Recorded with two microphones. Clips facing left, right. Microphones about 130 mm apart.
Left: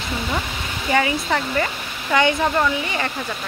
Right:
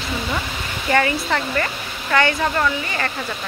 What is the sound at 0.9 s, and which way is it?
Speech, 10° left (ahead or behind).